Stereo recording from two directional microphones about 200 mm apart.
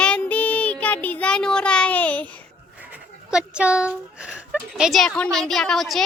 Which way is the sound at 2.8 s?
5° right (ahead or behind).